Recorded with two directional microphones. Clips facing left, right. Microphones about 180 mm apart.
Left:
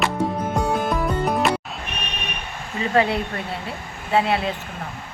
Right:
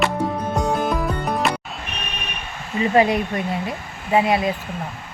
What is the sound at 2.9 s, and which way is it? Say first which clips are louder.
Speech: right 3 dB; 15° right (ahead or behind).